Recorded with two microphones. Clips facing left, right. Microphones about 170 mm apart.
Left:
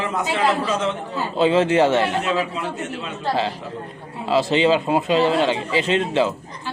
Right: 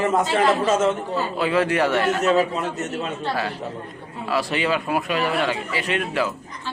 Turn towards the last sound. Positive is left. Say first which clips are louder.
# left 4 dB
turn(degrees=25)  # may be behind; listen again after turning